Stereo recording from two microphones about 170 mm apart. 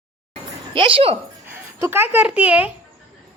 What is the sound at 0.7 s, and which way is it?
Speech, 30° right (ahead or behind).